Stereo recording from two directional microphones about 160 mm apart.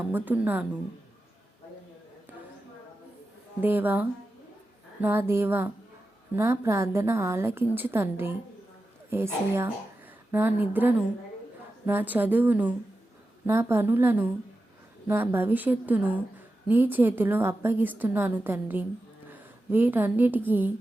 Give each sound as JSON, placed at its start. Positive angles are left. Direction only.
{"t": 0.1, "sound": "a woman's voice", "side_deg": -10}
{"t": 3.6, "sound": "a woman's voice", "side_deg": -10}